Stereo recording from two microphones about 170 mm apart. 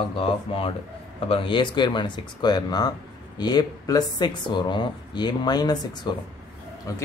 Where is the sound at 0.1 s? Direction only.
30° left (ahead or behind).